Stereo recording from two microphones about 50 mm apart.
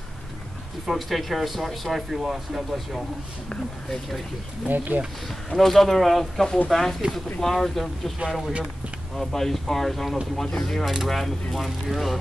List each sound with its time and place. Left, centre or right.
0.8 s speech: centre
4.6 s speech: right
5.5 s speech: centre